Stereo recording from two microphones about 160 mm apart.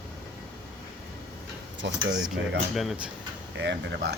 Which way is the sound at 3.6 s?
90° right.